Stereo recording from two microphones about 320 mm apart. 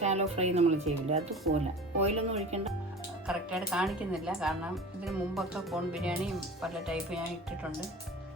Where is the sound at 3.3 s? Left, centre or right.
Centre.